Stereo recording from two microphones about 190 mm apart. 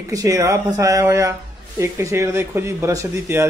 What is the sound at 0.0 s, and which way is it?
Speech, 15° right (ahead or behind).